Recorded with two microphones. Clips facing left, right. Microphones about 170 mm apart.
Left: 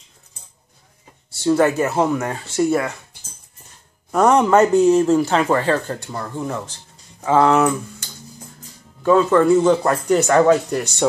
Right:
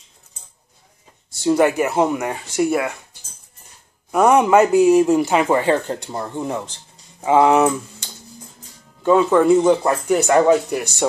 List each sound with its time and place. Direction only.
1.4 s a man's voice: 15° right (ahead or behind)
4.1 s a man's voice: 10° right (ahead or behind)